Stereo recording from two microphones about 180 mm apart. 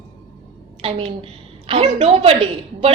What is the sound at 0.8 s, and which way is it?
A woman's voice, 35° right (ahead or behind).